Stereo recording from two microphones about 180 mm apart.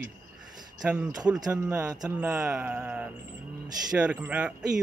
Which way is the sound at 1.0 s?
20° right (ahead or behind).